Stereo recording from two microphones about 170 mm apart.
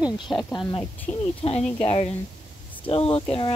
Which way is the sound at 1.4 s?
30° left (ahead or behind).